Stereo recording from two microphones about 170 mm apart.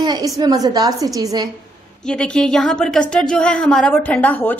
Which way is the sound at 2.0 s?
5° left (ahead or behind).